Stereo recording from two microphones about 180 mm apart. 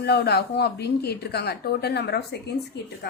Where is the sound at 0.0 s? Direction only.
65° left (ahead or behind).